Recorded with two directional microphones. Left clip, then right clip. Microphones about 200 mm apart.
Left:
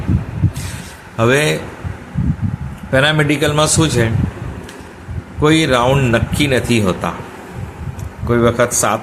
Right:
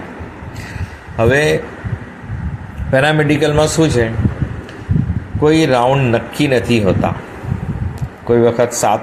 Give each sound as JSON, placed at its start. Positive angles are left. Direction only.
{"t": 1.1, "sound": "speech", "side_deg": 10}
{"t": 2.9, "sound": "speech", "side_deg": 0}
{"t": 5.4, "sound": "speech", "side_deg": 5}
{"t": 8.3, "sound": "speech", "side_deg": 0}